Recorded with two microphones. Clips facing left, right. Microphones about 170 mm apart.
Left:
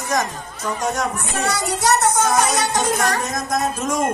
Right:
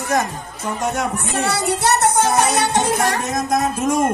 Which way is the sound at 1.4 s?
60° right (ahead or behind).